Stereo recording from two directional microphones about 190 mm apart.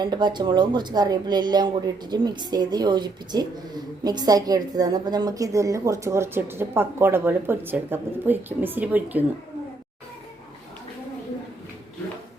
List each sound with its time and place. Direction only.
0.0 s speech: 25° right (ahead or behind)